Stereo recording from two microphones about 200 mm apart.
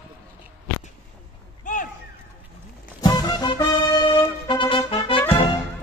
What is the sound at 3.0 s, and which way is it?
Music, 20° left (ahead or behind).